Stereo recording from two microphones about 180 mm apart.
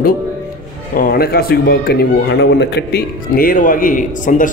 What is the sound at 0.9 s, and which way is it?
A man's voice, 55° left (ahead or behind).